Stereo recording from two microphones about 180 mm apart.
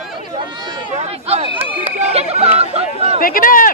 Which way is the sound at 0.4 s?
20° right (ahead or behind).